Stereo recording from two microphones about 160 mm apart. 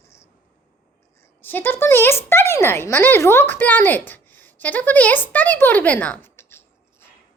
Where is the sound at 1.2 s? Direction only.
10° left (ahead or behind).